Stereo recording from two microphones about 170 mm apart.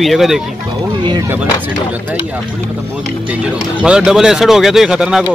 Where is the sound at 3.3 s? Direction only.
5° right (ahead or behind).